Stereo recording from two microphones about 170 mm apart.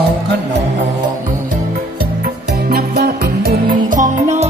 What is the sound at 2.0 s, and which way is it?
Music, 60° right (ahead or behind).